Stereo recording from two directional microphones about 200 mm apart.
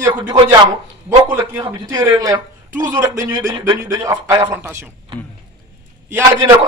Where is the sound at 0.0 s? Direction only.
15° right (ahead or behind).